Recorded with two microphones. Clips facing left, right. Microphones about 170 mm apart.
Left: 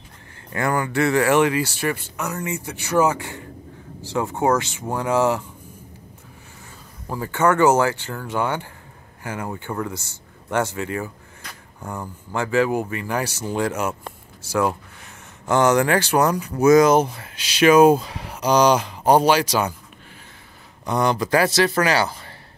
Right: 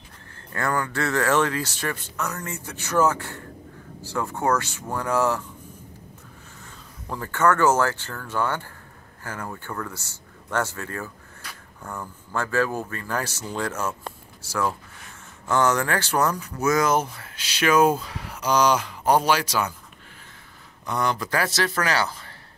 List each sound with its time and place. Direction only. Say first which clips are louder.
0.5 s speech: left 3 dB; 10° left (ahead or behind)
7.1 s speech: left 2 dB; 15° left (ahead or behind)
20.8 s speech: left 5 dB; 20° left (ahead or behind)